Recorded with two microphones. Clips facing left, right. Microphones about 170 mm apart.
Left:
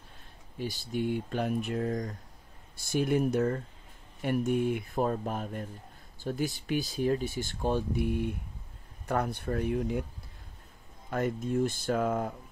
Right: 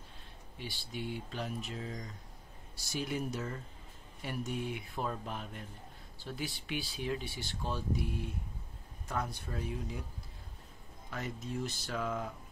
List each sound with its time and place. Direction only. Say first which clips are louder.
0.6 s speech: left 10 dB; 45° left (ahead or behind); by 10.0 s 60° left (ahead or behind)
11.1 s speech: left 10 dB; 50° left (ahead or behind)